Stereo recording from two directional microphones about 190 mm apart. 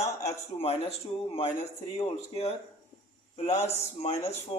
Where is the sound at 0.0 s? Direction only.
15° left (ahead or behind).